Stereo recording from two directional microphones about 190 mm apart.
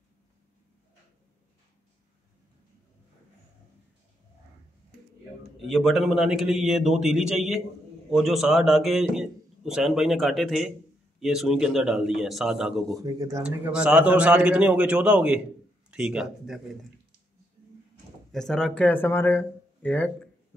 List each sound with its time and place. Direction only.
5.6 s a man's voice: centre (ahead or behind)
13.0 s speech: 20° right (ahead or behind)
13.4 s a man's voice: 5° right (ahead or behind)
18.3 s speech: centre (ahead or behind)